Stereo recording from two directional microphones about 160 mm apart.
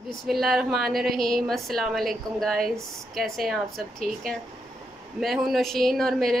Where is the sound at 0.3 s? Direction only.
Centre (ahead or behind).